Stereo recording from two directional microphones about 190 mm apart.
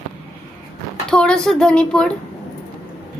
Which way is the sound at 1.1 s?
5° left (ahead or behind).